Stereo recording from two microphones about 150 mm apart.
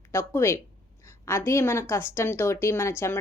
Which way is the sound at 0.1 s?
15° left (ahead or behind).